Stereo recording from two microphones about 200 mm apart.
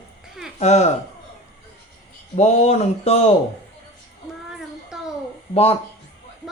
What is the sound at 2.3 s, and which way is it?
Speech, 30° left (ahead or behind).